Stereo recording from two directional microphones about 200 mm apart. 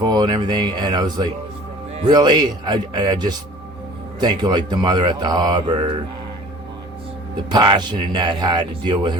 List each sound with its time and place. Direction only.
0.0 s speech: 20° right (ahead or behind)
7.5 s speech: 20° right (ahead or behind)